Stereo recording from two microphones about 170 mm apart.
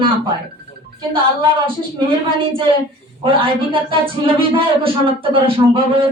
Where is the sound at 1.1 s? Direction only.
30° right (ahead or behind).